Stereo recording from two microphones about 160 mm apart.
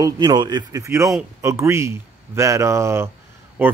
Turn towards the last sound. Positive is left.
turn(degrees=-10)  # may be behind; listen again after turning